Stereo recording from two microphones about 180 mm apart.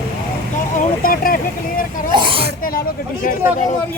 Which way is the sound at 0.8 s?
50° left (ahead or behind).